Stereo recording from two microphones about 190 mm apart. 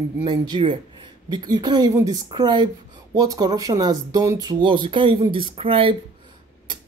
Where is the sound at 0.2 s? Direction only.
25° right (ahead or behind).